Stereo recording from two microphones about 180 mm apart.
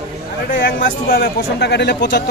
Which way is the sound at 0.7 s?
55° left (ahead or behind).